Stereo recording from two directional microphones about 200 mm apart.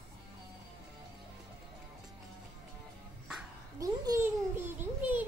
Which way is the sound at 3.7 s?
15° right (ahead or behind).